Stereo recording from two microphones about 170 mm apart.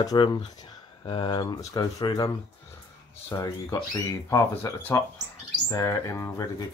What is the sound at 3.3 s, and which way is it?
Speech, 20° left (ahead or behind).